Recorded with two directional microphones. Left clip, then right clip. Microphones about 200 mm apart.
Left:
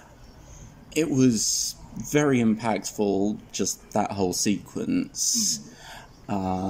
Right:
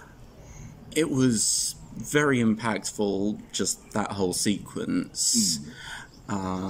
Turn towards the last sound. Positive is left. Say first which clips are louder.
# left 3 dB
turn(degrees=15)  # may be behind; listen again after turning